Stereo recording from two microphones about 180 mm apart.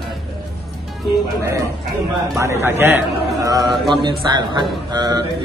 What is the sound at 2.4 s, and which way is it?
A man's voice, 15° right (ahead or behind).